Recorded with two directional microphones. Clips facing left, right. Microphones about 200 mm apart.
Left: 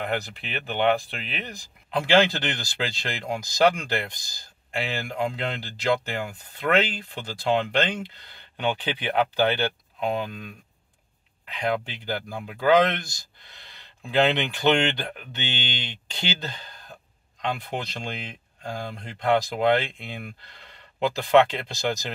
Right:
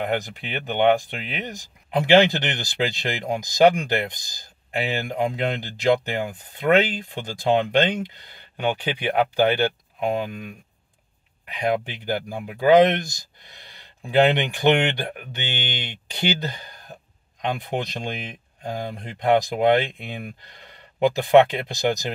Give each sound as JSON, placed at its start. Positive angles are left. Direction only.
{"t": 0.2, "sound": "speech", "side_deg": -15}